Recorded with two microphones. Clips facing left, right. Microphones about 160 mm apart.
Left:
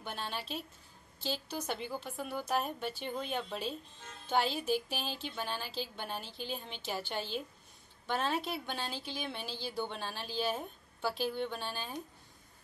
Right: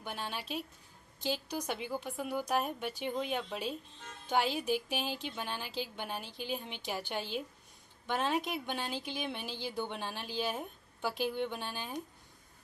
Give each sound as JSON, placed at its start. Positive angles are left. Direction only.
{"t": 0.0, "sound": "a woman's voice", "side_deg": -10}